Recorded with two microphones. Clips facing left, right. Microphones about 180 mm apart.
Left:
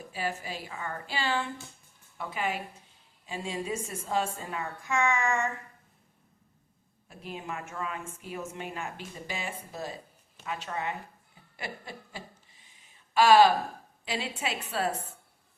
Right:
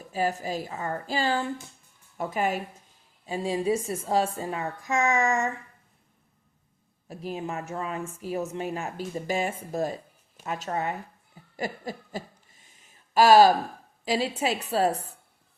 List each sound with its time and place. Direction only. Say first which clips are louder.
0.1 s speech: right 7 dB; 40° right (ahead or behind)
7.1 s speech: right 6 dB; 40° right (ahead or behind)
11.5 s a sound: right 8 dB; 40° right (ahead or behind)
13.1 s speech: right 3 dB; 40° right (ahead or behind)